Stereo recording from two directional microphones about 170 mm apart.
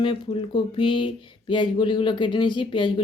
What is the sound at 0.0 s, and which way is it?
Speech, 30° left (ahead or behind).